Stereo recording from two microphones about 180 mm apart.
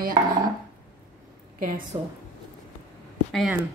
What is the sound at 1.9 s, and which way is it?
Speech, 25° right (ahead or behind).